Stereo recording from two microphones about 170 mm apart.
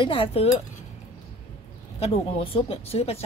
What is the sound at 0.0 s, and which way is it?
Speech, 30° left (ahead or behind).